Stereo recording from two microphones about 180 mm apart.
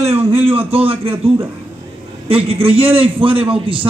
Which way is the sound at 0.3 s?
30° right (ahead or behind).